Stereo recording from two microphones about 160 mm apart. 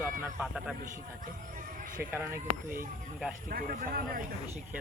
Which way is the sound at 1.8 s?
60° right (ahead or behind).